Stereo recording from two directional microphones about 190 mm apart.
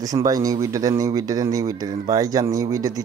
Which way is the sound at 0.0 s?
20° right (ahead or behind).